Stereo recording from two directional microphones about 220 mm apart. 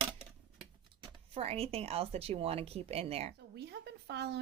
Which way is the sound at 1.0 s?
25° right (ahead or behind).